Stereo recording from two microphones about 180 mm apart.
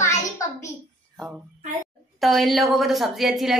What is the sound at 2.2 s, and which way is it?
A woman's voice, centre (ahead or behind).